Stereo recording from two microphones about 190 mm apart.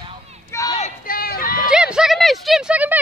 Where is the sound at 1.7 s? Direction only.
5° right (ahead or behind).